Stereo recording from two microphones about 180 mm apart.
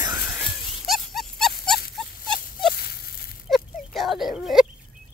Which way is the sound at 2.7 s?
60° left (ahead or behind).